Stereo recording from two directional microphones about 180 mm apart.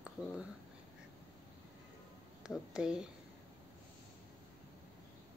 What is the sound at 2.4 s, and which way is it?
Speech, 5° right (ahead or behind).